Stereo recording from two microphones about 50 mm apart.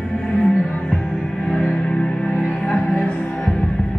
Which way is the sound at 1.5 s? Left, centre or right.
Centre.